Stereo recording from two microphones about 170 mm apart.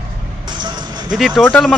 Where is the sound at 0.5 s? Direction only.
25° right (ahead or behind).